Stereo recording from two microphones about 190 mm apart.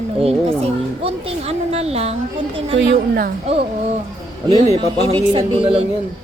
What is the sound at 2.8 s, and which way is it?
Speech, 55° right (ahead or behind).